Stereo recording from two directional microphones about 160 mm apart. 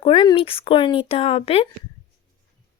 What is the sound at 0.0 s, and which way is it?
Speech, 30° left (ahead or behind).